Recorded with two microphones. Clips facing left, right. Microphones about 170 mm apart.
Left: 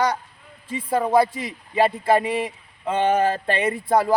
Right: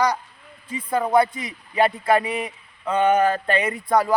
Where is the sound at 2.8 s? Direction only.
25° left (ahead or behind).